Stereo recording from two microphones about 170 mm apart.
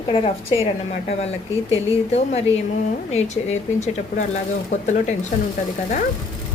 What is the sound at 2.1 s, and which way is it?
A woman's voice, 40° left (ahead or behind).